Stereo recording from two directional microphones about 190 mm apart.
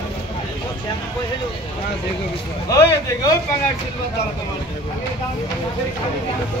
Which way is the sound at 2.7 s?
20° left (ahead or behind).